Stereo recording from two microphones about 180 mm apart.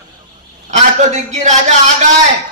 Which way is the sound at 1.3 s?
40° right (ahead or behind).